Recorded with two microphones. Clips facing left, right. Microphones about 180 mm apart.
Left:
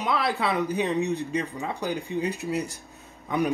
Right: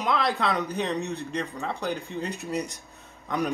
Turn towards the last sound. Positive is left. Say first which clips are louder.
# left 3 dB
turn(degrees=0)  # may be behind; listen again after turning